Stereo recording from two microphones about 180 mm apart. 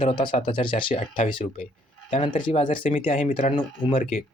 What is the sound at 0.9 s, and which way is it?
Speech, 40° left (ahead or behind).